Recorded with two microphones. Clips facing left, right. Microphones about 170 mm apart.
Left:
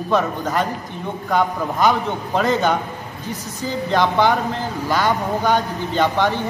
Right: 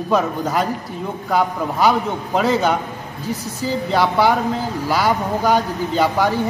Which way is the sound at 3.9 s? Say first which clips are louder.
Even; 5° right (ahead or behind).